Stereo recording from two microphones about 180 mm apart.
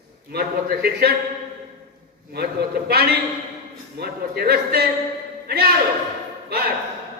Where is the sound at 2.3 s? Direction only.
60° right (ahead or behind).